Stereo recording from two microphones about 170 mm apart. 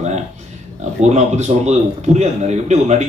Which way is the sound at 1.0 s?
40° right (ahead or behind).